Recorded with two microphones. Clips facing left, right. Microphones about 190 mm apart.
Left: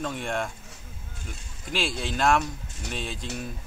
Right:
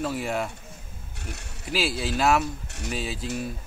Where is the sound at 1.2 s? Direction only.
70° right (ahead or behind).